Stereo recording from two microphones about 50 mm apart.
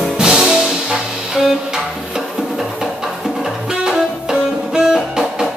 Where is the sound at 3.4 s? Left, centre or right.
Centre.